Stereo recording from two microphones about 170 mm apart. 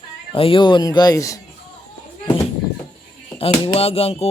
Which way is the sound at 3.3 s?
30° left (ahead or behind).